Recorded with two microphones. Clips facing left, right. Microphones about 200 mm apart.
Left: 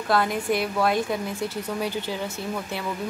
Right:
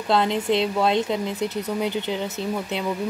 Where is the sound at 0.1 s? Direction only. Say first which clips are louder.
Right 3 dB; 25° right (ahead or behind).